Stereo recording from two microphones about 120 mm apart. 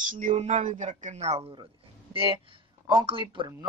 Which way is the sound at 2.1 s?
50° right (ahead or behind).